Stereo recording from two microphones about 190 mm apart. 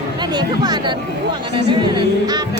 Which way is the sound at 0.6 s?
20° right (ahead or behind).